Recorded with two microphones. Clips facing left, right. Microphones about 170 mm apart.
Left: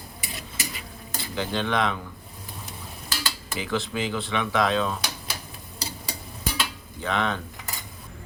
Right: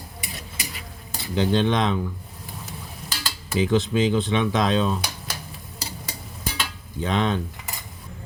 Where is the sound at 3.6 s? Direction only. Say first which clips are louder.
Right 8 dB; 20° right (ahead or behind).